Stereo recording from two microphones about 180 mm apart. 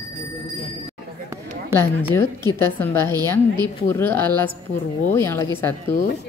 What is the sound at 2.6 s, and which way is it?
Speech, 15° left (ahead or behind).